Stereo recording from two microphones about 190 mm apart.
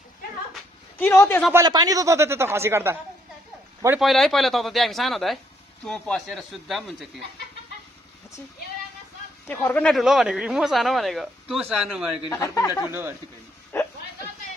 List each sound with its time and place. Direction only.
0.9 s a man's voice: 10° left (ahead or behind)
1.5 s speech: 20° right (ahead or behind)
4.0 s speech: centre (ahead or behind)
9.5 s speech: 10° left (ahead or behind)
12.2 s speech: 15° left (ahead or behind)
13.7 s a sound: 10° left (ahead or behind)